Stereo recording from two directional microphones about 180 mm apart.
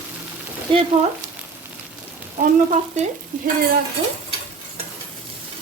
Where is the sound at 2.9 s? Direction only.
40° right (ahead or behind).